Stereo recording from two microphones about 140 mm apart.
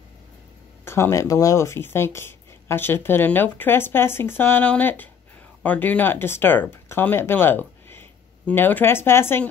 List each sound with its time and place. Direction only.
0.8 s speech: 20° left (ahead or behind)